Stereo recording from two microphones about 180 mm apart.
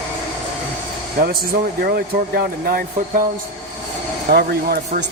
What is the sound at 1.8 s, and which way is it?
Speech, 55° right (ahead or behind).